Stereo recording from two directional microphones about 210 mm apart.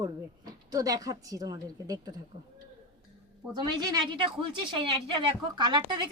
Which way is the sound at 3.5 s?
20° right (ahead or behind).